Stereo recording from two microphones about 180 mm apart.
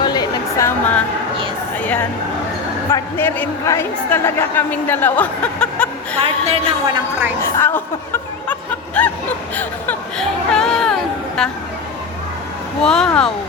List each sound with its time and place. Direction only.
0.0 s a sound: 20° left (ahead or behind)
1.8 s a woman's voice: 10° left (ahead or behind)
6.1 s a woman's voice: 35° right (ahead or behind)
7.4 s speech: 10° left (ahead or behind)
9.0 s a sound: 5° left (ahead or behind)
11.4 s speech: 5° left (ahead or behind)
12.8 s speech: 5° left (ahead or behind)